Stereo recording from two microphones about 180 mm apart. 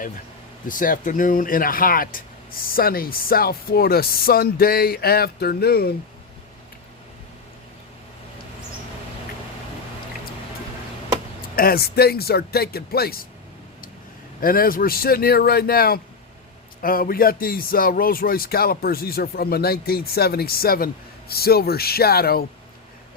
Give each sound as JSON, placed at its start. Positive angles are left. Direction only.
{"t": 0.7, "sound": "speech", "side_deg": 50}
{"t": 11.5, "sound": "speech", "side_deg": 55}
{"t": 14.4, "sound": "speech", "side_deg": 55}